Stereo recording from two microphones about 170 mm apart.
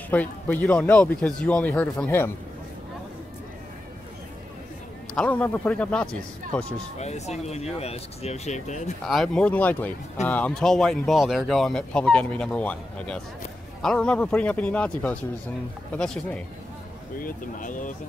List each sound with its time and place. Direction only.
0.1 s speech: 10° left (ahead or behind)
5.1 s speech: 10° left (ahead or behind)
7.0 s speech: 40° left (ahead or behind)
9.0 s speech: centre (ahead or behind)
17.2 s speech: 55° left (ahead or behind)